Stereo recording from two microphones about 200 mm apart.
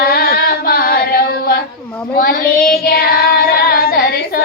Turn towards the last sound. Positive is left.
turn(degrees=50)  # may be behind; listen again after turning